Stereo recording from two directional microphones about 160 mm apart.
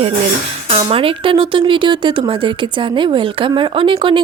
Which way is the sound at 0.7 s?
40° right (ahead or behind).